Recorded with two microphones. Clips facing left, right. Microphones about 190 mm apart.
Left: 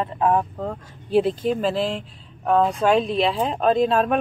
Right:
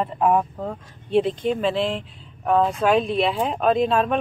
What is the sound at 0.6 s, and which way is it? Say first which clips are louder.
Speech: left 1 dB; centre (ahead or behind).